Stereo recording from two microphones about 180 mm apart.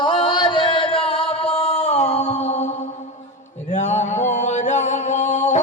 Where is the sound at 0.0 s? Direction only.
25° left (ahead or behind).